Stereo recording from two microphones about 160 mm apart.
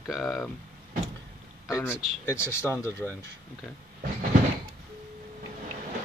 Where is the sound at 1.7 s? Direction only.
15° left (ahead or behind).